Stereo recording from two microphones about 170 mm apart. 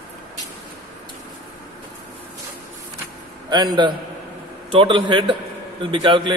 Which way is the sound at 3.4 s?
25° right (ahead or behind).